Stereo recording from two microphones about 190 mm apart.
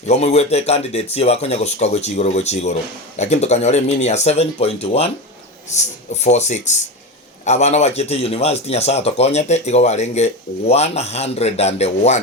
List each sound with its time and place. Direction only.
0.1 s a man's voice: 35° left (ahead or behind)
6.2 s a man's voice: 35° left (ahead or behind)